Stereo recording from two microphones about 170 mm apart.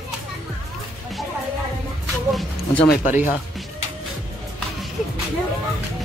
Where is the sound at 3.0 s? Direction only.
45° left (ahead or behind).